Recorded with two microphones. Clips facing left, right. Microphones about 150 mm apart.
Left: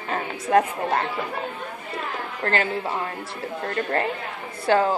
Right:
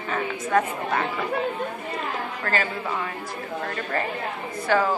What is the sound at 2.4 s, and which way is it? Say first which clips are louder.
Speech: left 5 dB; 30° left (ahead or behind).